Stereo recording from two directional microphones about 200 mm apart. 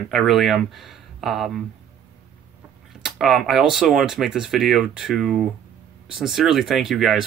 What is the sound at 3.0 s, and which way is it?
Speech, centre (ahead or behind).